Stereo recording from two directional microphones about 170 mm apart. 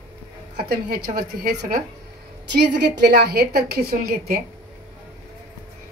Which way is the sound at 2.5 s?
80° right.